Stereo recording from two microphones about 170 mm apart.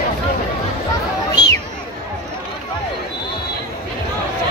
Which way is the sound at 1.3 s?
25° left (ahead or behind).